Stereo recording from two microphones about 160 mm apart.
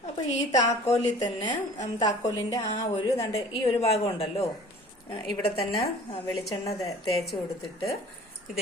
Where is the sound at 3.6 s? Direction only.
35° left (ahead or behind).